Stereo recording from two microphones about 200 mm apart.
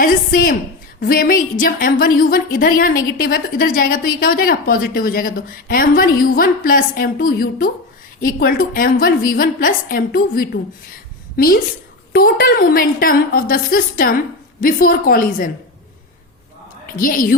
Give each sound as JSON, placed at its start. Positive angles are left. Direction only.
{"t": 0.0, "sound": "a woman's voice", "side_deg": 45}
{"t": 17.0, "sound": "a woman's voice", "side_deg": 45}